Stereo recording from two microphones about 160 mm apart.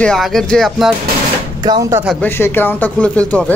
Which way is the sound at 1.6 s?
20° right (ahead or behind).